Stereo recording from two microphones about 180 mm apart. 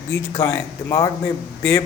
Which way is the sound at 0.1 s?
15° left (ahead or behind).